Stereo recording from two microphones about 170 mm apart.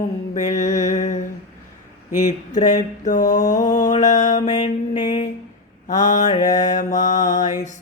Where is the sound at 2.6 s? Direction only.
45° left (ahead or behind).